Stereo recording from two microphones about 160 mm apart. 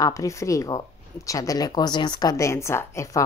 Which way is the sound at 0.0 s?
20° left (ahead or behind).